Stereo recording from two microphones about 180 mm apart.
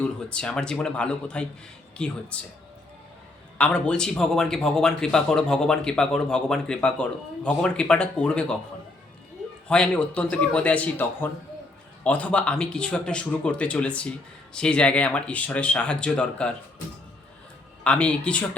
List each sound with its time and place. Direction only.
0.0 s speech: 5° left (ahead or behind)
3.6 s speech: 5° left (ahead or behind)
9.6 s speech: 5° left (ahead or behind)
17.8 s speech: 5° left (ahead or behind)